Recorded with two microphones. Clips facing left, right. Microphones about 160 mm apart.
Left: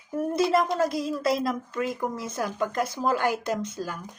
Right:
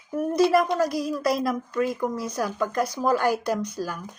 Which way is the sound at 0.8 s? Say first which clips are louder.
Right 1 dB; 25° left (ahead or behind).